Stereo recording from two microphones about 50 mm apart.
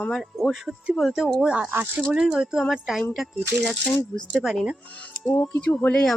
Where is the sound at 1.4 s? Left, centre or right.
Right.